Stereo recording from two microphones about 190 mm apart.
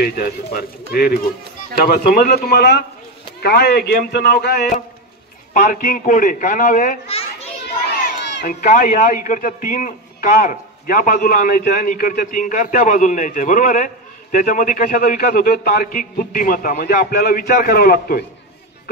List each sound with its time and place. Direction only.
0.0 s a man's voice: 50° left (ahead or behind)
5.5 s a child's voice: 45° left (ahead or behind)
8.5 s a man's voice: 45° left (ahead or behind)